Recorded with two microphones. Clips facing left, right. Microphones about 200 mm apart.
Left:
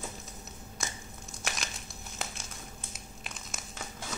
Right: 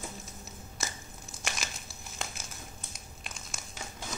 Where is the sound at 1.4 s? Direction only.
Centre (ahead or behind).